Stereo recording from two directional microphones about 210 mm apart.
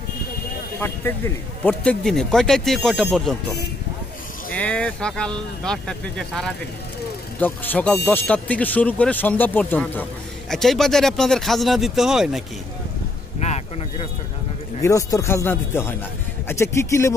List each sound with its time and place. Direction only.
0.7 s speech: 10° left (ahead or behind)
13.4 s a sound: 30° left (ahead or behind)
14.8 s speech: 15° left (ahead or behind)